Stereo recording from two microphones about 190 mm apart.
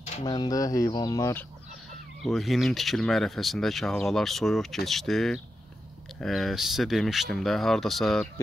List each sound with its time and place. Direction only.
0.0 s a sound: 35° left (ahead or behind)
0.3 s speech: 20° left (ahead or behind)
2.2 s speech: centre (ahead or behind)